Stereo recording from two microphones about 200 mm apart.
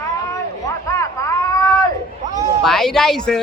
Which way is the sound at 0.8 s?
15° left (ahead or behind).